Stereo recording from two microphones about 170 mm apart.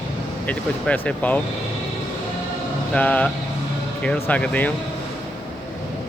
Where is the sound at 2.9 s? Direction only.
10° left (ahead or behind).